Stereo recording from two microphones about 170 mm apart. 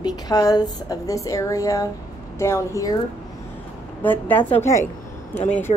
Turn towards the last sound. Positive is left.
turn(degrees=45)  # may be behind; listen again after turning